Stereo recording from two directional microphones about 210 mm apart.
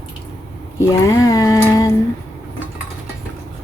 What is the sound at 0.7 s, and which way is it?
Speech, 15° left (ahead or behind).